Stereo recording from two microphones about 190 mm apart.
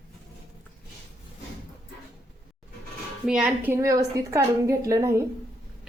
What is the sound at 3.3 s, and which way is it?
A woman's voice, 5° right (ahead or behind).